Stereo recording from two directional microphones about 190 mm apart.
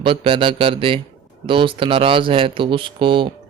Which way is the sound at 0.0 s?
25° right (ahead or behind).